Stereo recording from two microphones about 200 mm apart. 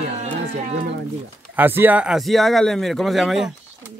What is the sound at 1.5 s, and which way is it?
Speech, 10° right (ahead or behind).